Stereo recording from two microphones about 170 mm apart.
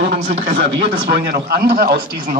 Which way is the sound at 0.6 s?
85° right.